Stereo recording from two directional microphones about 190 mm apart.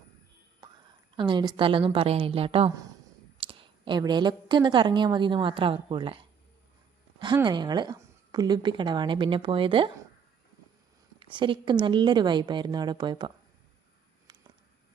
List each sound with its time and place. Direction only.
1.1 s a woman's voice: 25° right (ahead or behind)
7.4 s a woman's voice: 25° right (ahead or behind)
11.2 s a woman's voice: 25° right (ahead or behind)
14.3 s a sound: 25° right (ahead or behind)